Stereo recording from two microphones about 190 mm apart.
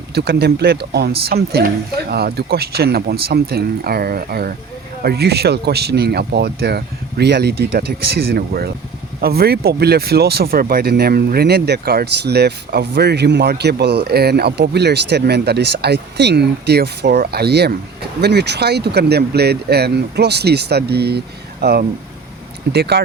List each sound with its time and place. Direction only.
0.1 s speech: 55° right (ahead or behind)